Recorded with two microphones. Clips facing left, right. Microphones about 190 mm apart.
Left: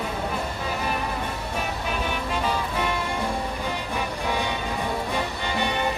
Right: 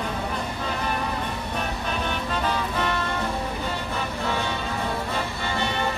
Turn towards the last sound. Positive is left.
turn(degrees=15)  # may be behind; listen again after turning